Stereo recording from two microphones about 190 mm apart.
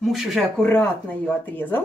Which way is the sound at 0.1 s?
Centre (ahead or behind).